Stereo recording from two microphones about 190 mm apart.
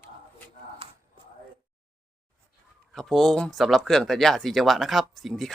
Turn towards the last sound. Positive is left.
turn(degrees=0)  # may be behind; listen again after turning